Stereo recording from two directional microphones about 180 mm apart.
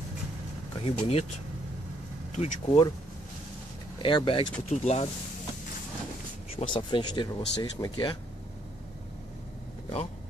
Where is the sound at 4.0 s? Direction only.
25° left (ahead or behind).